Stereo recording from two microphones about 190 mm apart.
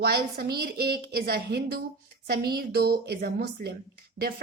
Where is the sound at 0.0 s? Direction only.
55° right (ahead or behind).